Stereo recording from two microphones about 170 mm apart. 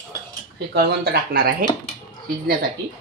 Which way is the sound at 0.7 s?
70° right (ahead or behind).